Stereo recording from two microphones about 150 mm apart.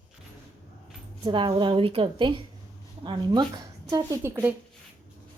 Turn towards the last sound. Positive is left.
turn(degrees=-15)  # may be behind; listen again after turning